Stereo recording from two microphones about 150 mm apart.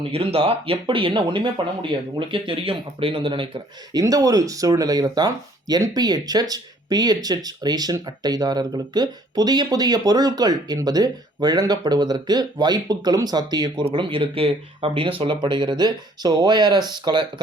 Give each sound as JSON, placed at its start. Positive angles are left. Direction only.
{"t": 0.1, "sound": "speech", "side_deg": -40}
{"t": 4.0, "sound": "speech", "side_deg": -25}